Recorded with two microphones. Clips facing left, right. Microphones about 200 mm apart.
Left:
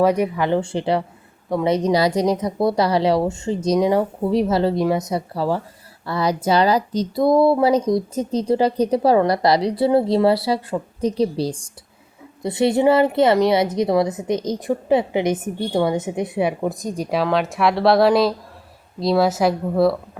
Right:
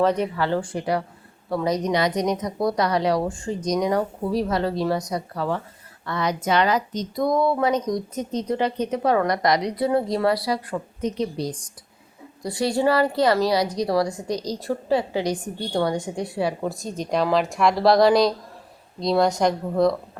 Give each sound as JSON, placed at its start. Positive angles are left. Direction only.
{"t": 0.0, "sound": "a woman's voice", "side_deg": 10}